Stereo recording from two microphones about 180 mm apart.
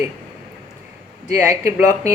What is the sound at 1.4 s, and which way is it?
Speech, 15° right (ahead or behind).